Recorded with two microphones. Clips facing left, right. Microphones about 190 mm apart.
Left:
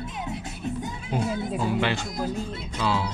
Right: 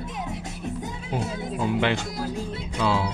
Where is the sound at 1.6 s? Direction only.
20° right (ahead or behind).